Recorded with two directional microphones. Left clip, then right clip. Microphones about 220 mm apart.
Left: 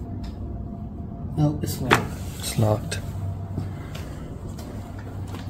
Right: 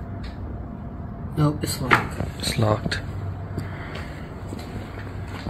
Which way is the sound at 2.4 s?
15° left (ahead or behind).